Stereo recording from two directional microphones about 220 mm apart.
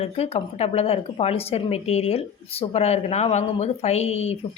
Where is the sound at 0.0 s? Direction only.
25° left (ahead or behind).